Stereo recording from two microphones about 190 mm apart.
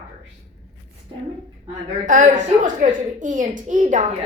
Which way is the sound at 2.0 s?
45° right (ahead or behind).